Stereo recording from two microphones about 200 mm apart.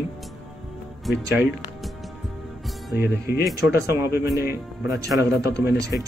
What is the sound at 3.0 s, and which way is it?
Speech, 50° left (ahead or behind).